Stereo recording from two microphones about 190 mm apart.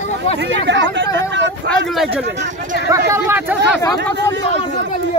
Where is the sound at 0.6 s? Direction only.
70° right (ahead or behind).